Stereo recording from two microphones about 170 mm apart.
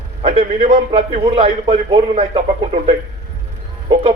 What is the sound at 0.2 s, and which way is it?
A man's voice, 35° right (ahead or behind).